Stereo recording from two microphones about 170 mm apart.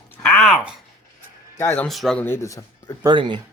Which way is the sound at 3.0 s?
25° right (ahead or behind).